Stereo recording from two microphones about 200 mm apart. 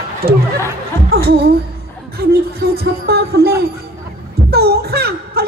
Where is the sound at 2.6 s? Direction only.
50° right (ahead or behind).